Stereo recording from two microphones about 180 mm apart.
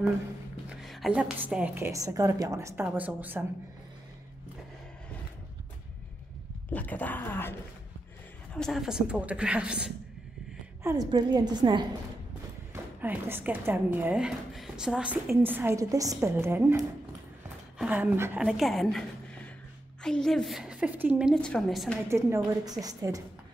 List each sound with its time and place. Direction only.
0.8 s a woman's voice: centre (ahead or behind)
6.7 s speech: 10° left (ahead or behind)
8.5 s a woman's voice: centre (ahead or behind)
10.8 s a woman's voice: 15° right (ahead or behind)
13.0 s a woman's voice: 10° right (ahead or behind)
21.4 s a woman's voice: 5° left (ahead or behind)
22.1 s a woman's voice: 20° right (ahead or behind)